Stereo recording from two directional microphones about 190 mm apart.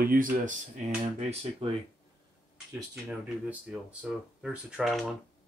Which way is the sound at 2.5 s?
10° right (ahead or behind).